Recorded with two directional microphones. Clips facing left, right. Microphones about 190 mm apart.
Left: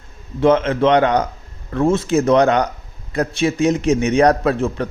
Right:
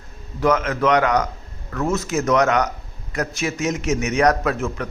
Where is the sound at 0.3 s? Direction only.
25° left (ahead or behind).